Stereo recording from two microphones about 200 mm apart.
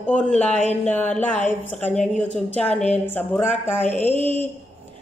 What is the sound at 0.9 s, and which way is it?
A man's voice, 5° left (ahead or behind).